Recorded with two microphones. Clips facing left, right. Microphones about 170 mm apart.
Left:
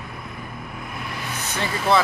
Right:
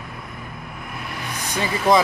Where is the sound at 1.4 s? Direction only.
15° right (ahead or behind).